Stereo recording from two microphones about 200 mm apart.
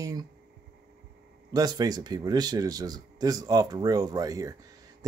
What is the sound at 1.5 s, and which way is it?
Speech, 20° right (ahead or behind).